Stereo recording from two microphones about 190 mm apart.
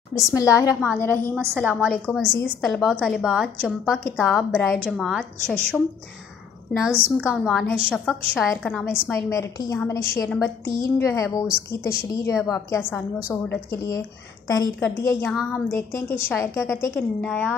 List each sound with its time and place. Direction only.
0.1 s a woman's voice: 15° left (ahead or behind)
1.6 s a woman's voice: 5° right (ahead or behind)
6.8 s a woman's voice: 5° right (ahead or behind)